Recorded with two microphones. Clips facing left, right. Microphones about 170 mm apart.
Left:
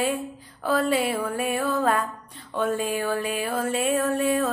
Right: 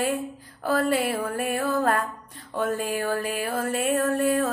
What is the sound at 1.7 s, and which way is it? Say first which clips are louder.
A woman's voice: even; 50° right (ahead or behind).